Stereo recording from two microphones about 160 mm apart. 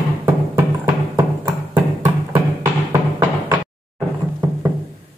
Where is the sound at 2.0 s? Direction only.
15° right (ahead or behind).